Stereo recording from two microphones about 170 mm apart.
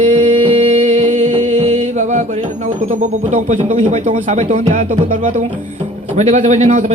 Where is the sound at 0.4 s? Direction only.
35° right (ahead or behind).